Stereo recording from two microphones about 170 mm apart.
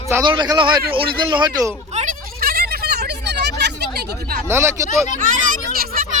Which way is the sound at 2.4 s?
65° right (ahead or behind).